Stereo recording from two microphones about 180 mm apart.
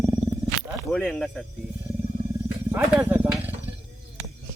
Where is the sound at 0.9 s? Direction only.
Centre (ahead or behind).